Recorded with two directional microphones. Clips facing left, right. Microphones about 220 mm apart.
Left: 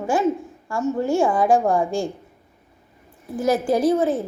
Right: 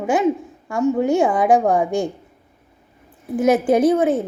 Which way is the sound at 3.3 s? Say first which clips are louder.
Right 4 dB; 20° right (ahead or behind).